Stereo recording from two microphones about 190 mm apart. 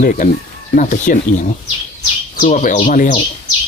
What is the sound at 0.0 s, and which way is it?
Speech, 45° left (ahead or behind).